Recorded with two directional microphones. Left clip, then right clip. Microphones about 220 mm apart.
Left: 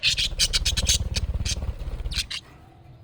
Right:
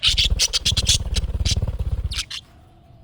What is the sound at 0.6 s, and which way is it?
Scrape, 10° right (ahead or behind).